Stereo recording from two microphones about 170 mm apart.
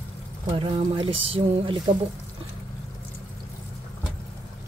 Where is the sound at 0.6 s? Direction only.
30° right (ahead or behind).